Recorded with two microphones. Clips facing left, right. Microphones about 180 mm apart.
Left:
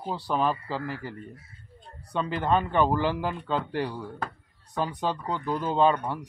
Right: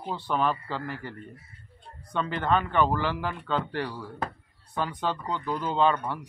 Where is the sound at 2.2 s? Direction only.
15° left (ahead or behind).